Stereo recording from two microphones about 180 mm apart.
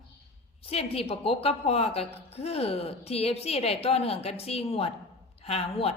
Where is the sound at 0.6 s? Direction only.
35° left (ahead or behind).